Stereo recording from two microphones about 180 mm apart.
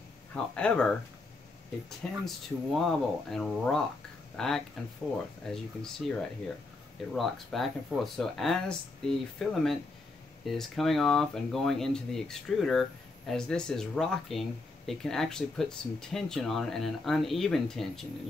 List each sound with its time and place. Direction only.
0.3 s speech: 5° left (ahead or behind)
7.2 s speech: centre (ahead or behind)